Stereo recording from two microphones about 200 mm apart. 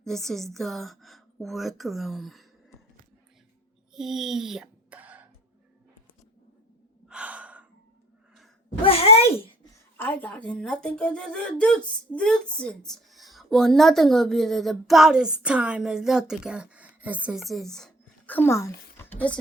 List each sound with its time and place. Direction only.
0.0 s speech: centre (ahead or behind)
3.9 s a sound: centre (ahead or behind)
7.1 s gasp: 5° right (ahead or behind)
8.8 s speech: 30° left (ahead or behind)
10.0 s a woman's voice: 10° left (ahead or behind)